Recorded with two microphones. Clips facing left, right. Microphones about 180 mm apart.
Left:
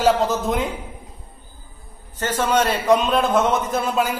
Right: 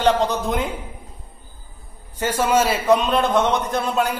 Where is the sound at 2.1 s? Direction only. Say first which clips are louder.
Right 1 dB; 10° right (ahead or behind).